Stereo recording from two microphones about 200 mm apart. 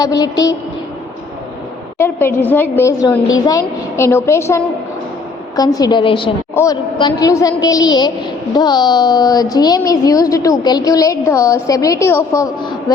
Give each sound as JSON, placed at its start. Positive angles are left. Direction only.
{"t": 0.0, "sound": "a woman's voice", "side_deg": 20}
{"t": 2.0, "sound": "a woman's voice", "side_deg": 10}
{"t": 6.5, "sound": "a woman's voice", "side_deg": 15}